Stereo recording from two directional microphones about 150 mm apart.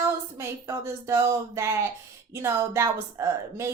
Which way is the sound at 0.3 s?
20° right (ahead or behind).